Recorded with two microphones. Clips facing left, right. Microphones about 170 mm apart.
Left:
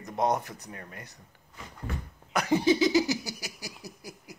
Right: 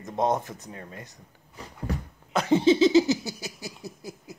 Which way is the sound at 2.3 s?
25° right (ahead or behind).